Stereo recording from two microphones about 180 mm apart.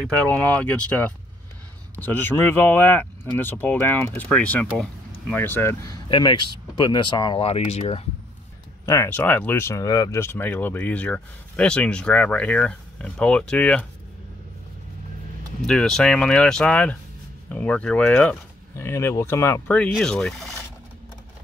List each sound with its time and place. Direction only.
0.3 s speech: 10° left (ahead or behind); by 7.4 s 25° left (ahead or behind)
7.4 s speech: 35° left (ahead or behind)
8.8 s speech: 15° left (ahead or behind)
15.6 s speech: 5° left (ahead or behind)